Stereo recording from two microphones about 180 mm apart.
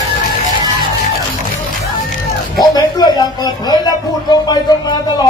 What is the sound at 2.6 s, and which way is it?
Speech, 25° left (ahead or behind).